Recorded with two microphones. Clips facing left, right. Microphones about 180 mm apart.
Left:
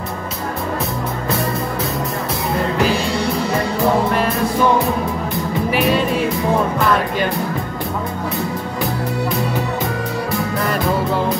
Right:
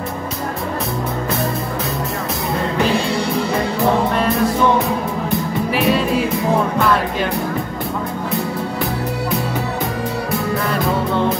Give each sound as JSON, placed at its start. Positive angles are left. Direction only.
{"t": 5.7, "sound": "music", "side_deg": 0}